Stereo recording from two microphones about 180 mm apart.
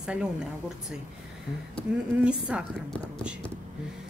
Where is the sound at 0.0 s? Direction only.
5° right (ahead or behind).